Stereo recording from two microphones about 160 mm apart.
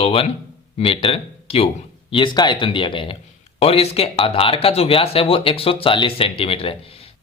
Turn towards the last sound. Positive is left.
turn(degrees=35)  # may be behind; listen again after turning